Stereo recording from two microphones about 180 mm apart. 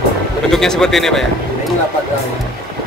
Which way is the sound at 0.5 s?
5° left (ahead or behind).